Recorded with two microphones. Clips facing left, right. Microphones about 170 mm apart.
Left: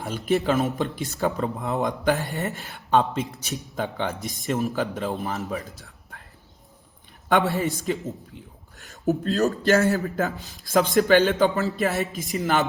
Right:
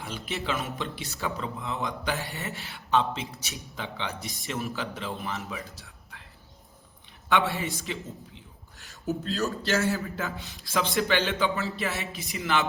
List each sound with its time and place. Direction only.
0.0 s speech: 50° left (ahead or behind)
7.3 s speech: 45° left (ahead or behind)
8.4 s a sound: 45° left (ahead or behind)
9.6 s speech: 55° left (ahead or behind)